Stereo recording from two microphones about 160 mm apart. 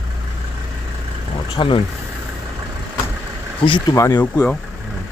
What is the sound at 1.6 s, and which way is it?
Speech, 35° left (ahead or behind).